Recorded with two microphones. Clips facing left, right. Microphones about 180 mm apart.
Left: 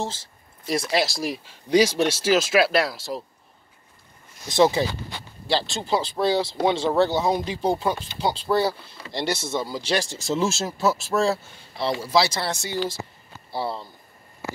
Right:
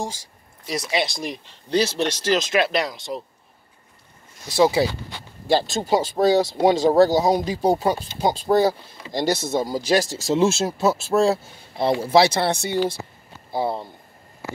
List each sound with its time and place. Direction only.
0.0 s speech: 15° right (ahead or behind)
0.7 s speech: centre (ahead or behind)
4.6 s speech: 10° right (ahead or behind)
5.5 s speech: 45° right (ahead or behind)
11.8 s speech: 50° right (ahead or behind)
13.6 s speech: 20° right (ahead or behind)